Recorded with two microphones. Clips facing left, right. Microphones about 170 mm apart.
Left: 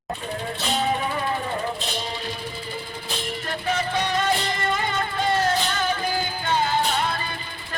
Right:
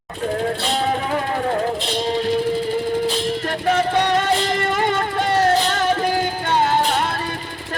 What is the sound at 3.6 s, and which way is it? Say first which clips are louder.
Music: right 7 dB; 60° right (ahead or behind).